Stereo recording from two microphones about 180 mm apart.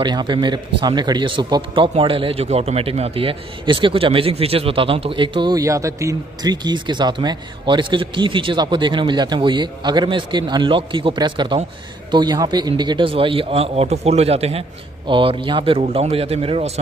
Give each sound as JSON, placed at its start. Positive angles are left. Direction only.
{"t": 0.0, "sound": "a man's voice", "side_deg": -25}